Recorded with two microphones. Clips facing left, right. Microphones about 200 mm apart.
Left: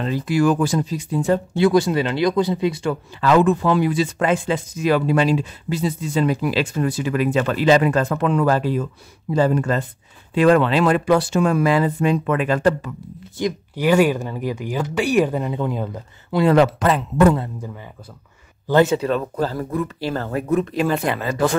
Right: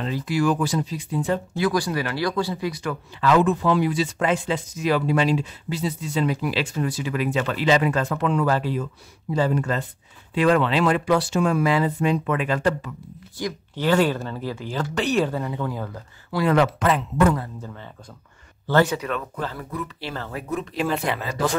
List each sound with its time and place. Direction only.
0.0 s speech: 50° left (ahead or behind)
1.5 s speech: 25° left (ahead or behind)
3.2 s speech: 50° left (ahead or behind)
13.4 s speech: 15° left (ahead or behind); by 17.4 s 35° left (ahead or behind)
18.7 s speech: 20° left (ahead or behind); by 21.5 s 50° left (ahead or behind)